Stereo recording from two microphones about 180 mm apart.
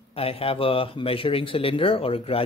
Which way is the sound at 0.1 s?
30° left (ahead or behind).